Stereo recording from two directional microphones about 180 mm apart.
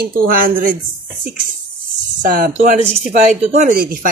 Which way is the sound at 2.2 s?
50° right (ahead or behind).